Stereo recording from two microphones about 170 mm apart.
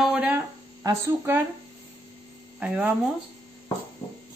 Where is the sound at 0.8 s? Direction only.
15° right (ahead or behind).